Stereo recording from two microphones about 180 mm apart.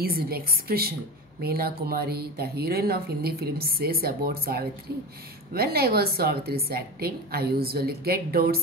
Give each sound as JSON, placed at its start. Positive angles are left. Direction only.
{"t": 0.0, "sound": "a woman's voice", "side_deg": -55}